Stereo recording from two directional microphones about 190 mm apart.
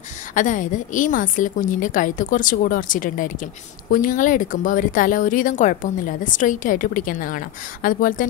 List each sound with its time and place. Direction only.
0.3 s speech: 40° left (ahead or behind)